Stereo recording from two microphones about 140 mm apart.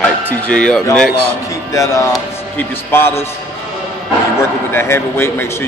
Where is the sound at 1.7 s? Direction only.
20° left (ahead or behind).